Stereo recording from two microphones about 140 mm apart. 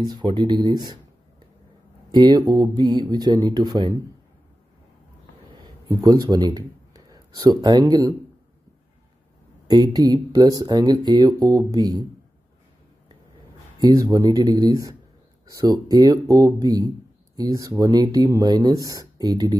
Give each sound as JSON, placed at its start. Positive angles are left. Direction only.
{"t": 0.0, "sound": "speech", "side_deg": -30}
{"t": 2.0, "sound": "speech", "side_deg": -30}
{"t": 5.9, "sound": "speech", "side_deg": -25}
{"t": 9.7, "sound": "speech", "side_deg": -25}
{"t": 13.7, "sound": "speech", "side_deg": -25}